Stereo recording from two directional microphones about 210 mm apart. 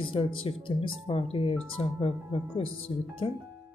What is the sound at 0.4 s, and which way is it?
Speech, 25° left (ahead or behind).